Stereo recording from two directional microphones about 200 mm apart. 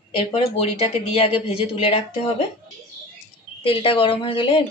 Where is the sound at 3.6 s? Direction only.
25° left (ahead or behind).